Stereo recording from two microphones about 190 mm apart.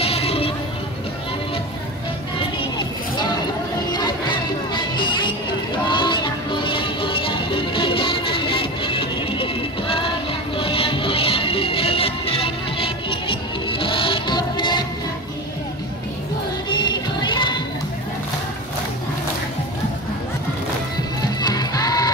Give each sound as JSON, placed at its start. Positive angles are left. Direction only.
{"t": 0.0, "sound": "a sound", "side_deg": 30}
{"t": 3.9, "sound": "music", "side_deg": 25}
{"t": 16.6, "sound": "music", "side_deg": 20}
{"t": 21.4, "sound": "music", "side_deg": 20}